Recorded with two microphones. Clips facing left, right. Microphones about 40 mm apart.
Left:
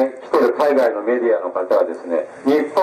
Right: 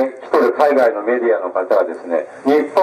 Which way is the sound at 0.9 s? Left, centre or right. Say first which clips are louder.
Right 1 dB; centre.